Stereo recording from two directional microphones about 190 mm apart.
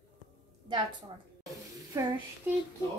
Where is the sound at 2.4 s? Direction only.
10° right (ahead or behind).